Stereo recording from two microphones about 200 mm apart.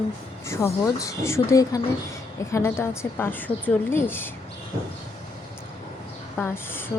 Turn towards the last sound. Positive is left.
turn(degrees=10)  # may be behind; listen again after turning